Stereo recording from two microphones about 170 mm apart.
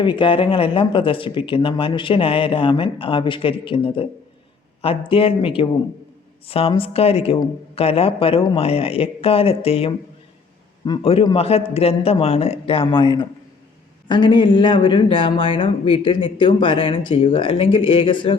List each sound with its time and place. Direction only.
0.0 s a man's voice: 30° left (ahead or behind)